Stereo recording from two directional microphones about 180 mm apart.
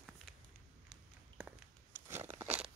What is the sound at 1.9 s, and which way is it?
Crunch, 10° right (ahead or behind).